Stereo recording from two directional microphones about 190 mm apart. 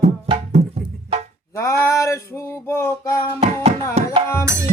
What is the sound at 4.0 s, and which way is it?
Music, 35° right (ahead or behind).